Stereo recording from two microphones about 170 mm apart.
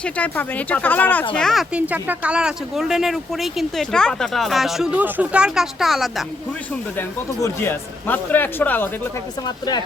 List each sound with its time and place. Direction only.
0.0 s speech: 10° left (ahead or behind)
7.4 s speech: 15° left (ahead or behind)